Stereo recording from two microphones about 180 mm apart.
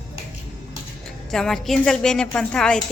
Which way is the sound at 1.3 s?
Centre (ahead or behind).